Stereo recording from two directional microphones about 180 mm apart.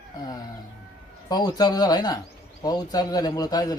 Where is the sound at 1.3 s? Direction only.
20° left (ahead or behind).